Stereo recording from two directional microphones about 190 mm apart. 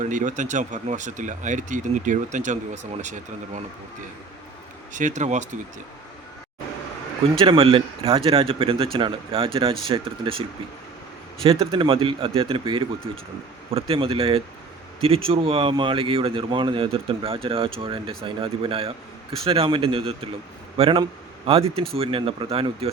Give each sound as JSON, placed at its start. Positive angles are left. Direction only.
{"t": 0.0, "sound": "speech", "side_deg": -40}
{"t": 4.9, "sound": "speech", "side_deg": -40}
{"t": 7.3, "sound": "speech", "side_deg": -25}
{"t": 11.4, "sound": "speech", "side_deg": -25}